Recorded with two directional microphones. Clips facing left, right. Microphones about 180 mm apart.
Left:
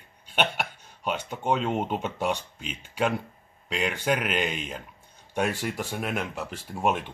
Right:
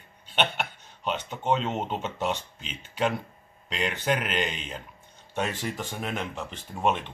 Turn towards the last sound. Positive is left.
turn(degrees=10)  # may be behind; listen again after turning